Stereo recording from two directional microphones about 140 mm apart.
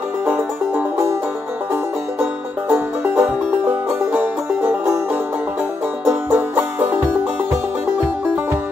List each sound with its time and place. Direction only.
0.3 s music: 15° right (ahead or behind)
2.7 s music: 10° right (ahead or behind)
6.0 s music: 10° right (ahead or behind)